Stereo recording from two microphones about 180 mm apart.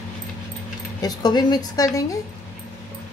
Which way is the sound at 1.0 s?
20° left (ahead or behind).